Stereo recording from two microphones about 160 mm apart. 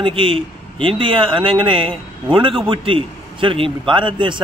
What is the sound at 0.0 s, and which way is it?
A man's voice, 35° right (ahead or behind).